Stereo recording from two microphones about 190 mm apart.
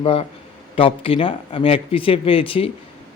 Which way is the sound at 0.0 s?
30° left (ahead or behind).